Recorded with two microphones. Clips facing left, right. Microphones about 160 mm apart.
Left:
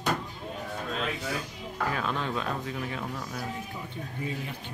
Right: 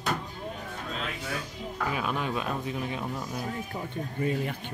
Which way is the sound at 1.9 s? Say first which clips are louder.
Right 1 dB; 10° right (ahead or behind).